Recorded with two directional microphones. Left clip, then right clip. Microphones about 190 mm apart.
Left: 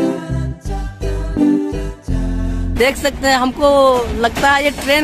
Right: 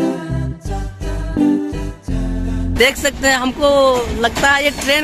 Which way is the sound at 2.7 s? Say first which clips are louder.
Right 1 dB; 5° left (ahead or behind).